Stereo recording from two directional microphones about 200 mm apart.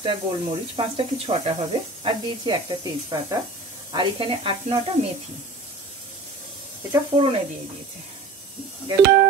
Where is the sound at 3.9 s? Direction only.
25° right (ahead or behind).